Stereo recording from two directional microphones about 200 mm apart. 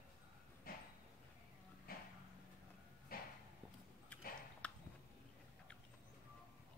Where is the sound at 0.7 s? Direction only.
45° left (ahead or behind).